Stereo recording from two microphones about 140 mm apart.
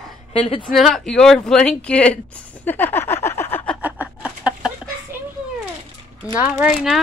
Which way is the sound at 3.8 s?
10° right (ahead or behind).